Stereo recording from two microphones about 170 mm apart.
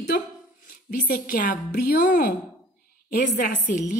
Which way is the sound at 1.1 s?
65° left (ahead or behind).